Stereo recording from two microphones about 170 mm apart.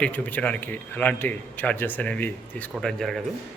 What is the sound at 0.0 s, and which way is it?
A man's voice, 10° left (ahead or behind).